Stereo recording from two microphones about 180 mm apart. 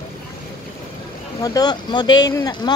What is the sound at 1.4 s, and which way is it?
Speech, 20° left (ahead or behind).